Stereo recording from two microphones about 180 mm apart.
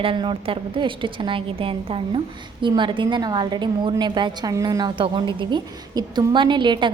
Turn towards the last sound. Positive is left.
turn(degrees=-25)  # may be behind; listen again after turning